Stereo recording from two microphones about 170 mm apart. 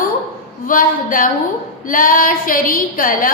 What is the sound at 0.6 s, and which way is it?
A woman's voice, 55° left (ahead or behind).